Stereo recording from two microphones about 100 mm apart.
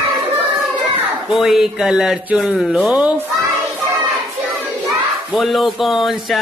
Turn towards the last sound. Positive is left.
turn(degrees=0)  # may be behind; listen again after turning